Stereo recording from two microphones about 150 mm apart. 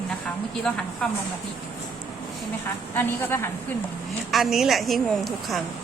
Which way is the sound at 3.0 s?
15° left (ahead or behind).